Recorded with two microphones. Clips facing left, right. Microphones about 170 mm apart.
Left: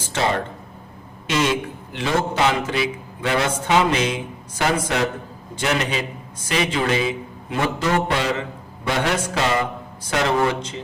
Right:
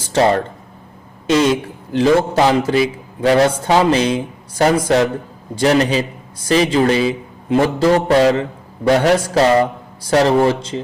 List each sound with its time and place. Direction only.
1.3 s a man's voice: 35° right (ahead or behind)